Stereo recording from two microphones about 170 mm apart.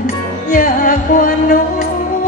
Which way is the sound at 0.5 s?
55° left (ahead or behind).